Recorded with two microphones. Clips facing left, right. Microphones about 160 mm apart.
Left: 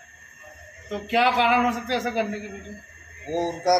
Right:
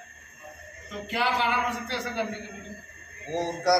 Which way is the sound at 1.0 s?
90° left.